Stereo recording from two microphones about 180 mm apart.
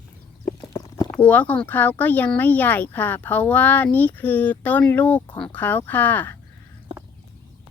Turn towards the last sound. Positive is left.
turn(degrees=10)  # may be behind; listen again after turning